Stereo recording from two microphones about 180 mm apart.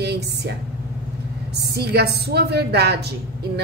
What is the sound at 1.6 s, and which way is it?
A woman's voice, 65° right (ahead or behind).